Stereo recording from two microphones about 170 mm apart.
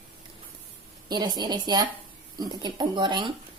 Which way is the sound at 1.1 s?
25° right (ahead or behind).